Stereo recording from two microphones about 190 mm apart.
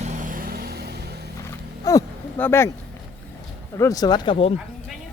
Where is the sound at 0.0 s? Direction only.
40° right (ahead or behind); by 0.9 s 55° right (ahead or behind).